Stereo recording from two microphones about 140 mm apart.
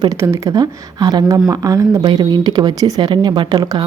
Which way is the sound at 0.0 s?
25° right (ahead or behind).